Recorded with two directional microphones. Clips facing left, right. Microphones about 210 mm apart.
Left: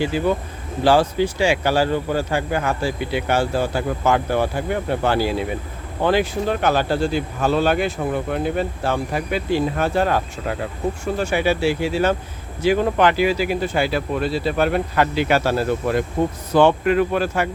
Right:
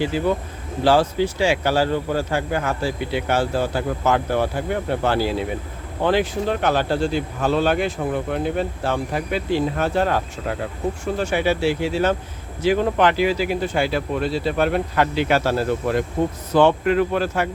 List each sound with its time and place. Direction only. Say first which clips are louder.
0.0 s speech: left 1 dB; 15° left (ahead or behind)